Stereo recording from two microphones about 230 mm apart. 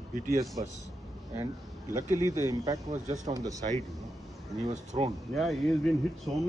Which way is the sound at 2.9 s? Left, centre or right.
Right.